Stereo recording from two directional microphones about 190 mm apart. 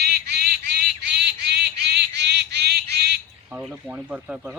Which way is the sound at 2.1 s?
60° right (ahead or behind).